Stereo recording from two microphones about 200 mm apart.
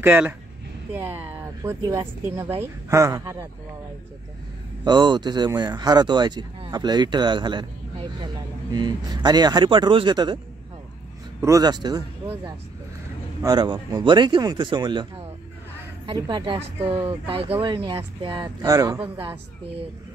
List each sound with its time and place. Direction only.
0.0 s speech: 10° right (ahead or behind)
4.8 s speech: 20° right (ahead or behind)
11.4 s speech: 20° right (ahead or behind)
13.4 s speech: 20° right (ahead or behind)
16.1 s speech: 25° right (ahead or behind)